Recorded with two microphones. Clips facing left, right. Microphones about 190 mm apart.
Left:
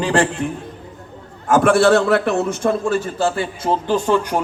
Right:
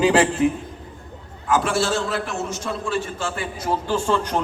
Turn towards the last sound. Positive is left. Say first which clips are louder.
# left 4 dB
turn(degrees=10)  # may be behind; listen again after turning